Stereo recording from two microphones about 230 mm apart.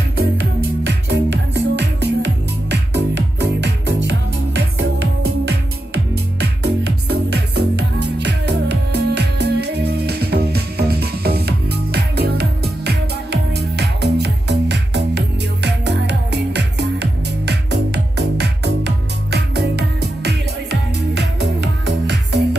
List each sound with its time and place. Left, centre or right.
0.4 s music: right
7.1 s music: right